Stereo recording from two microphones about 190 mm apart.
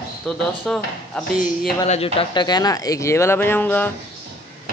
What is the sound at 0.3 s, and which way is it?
Speech, centre (ahead or behind).